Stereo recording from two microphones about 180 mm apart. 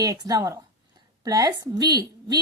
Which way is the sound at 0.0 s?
20° right (ahead or behind).